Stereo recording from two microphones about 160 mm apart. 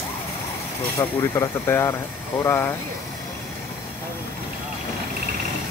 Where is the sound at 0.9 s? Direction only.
15° left (ahead or behind).